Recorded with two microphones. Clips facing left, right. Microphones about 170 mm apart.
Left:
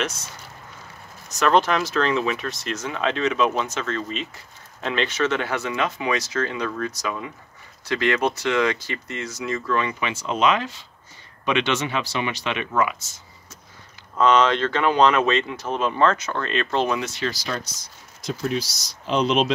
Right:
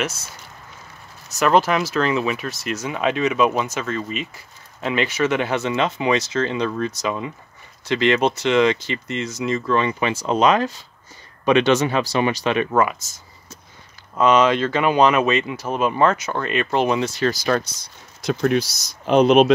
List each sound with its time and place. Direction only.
1.4 s speech: 5° right (ahead or behind); by 13.2 s 40° right (ahead or behind)
14.1 s speech: 10° right (ahead or behind)
17.0 s speech: 40° right (ahead or behind)
17.5 s speech: 60° right (ahead or behind)